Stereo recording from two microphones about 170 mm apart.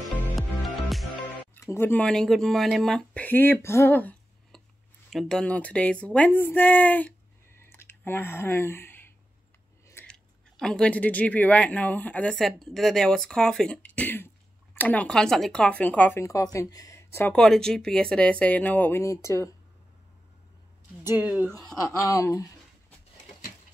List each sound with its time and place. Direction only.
0.4 s music: centre (ahead or behind)
1.5 s speech: 15° left (ahead or behind)
7.6 s a sound: 15° left (ahead or behind)
10.0 s speech: 5° left (ahead or behind)
21.0 s speech: 10° right (ahead or behind)
22.0 s a sound: 20° left (ahead or behind)